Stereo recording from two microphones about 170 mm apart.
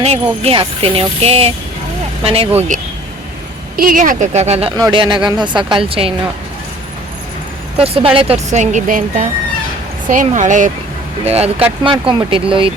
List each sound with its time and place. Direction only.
0.4 s speech: 35° right (ahead or behind)
2.6 s speech: 50° right (ahead or behind)
4.8 s speech: 30° right (ahead or behind)
7.8 s speech: 35° right (ahead or behind)